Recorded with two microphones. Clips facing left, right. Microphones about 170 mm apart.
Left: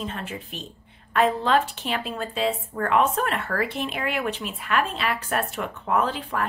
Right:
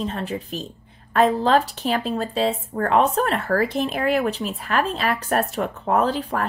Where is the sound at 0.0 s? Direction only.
35° right (ahead or behind).